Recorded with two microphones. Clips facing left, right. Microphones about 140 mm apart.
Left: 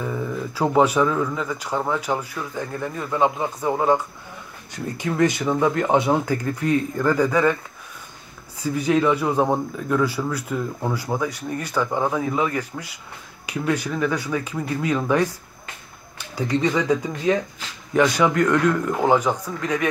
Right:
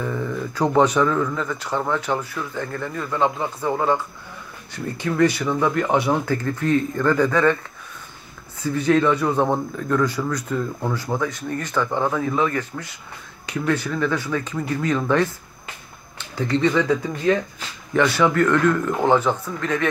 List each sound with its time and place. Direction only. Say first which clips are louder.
0.0 s a man's voice: right 1 dB; 10° left (ahead or behind)
8.6 s a man's voice: right 1 dB; 10° left (ahead or behind)